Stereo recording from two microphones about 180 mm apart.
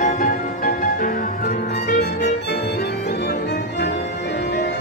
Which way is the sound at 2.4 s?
65° left (ahead or behind).